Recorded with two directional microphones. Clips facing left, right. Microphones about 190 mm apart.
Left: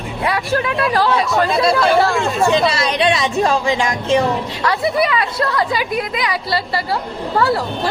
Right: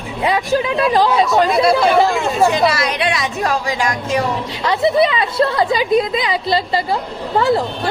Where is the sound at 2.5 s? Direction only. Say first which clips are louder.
Even; 25° left (ahead or behind).